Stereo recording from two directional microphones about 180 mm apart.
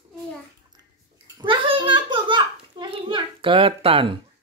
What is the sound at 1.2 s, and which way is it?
Babbling, 25° right (ahead or behind).